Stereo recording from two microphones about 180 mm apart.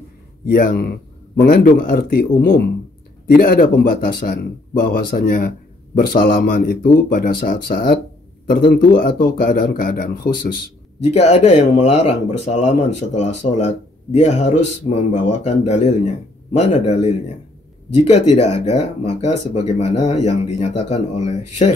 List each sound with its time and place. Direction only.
0.5 s speech: 55° left (ahead or behind)
11.0 s speech: 40° left (ahead or behind)
18.3 s speech: 40° left (ahead or behind)